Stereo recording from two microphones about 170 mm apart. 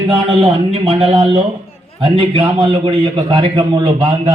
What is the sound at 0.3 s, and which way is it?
A man's voice, 35° right (ahead or behind).